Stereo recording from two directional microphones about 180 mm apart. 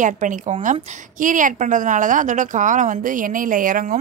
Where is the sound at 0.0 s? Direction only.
45° right (ahead or behind).